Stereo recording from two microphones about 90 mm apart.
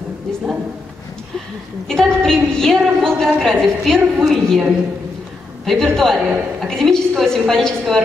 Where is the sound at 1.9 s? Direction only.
5° left (ahead or behind).